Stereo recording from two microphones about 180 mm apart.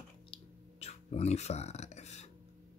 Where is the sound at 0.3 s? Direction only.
35° left (ahead or behind).